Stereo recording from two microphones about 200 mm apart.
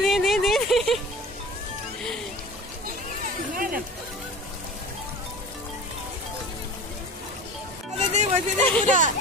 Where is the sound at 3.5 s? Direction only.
45° right (ahead or behind).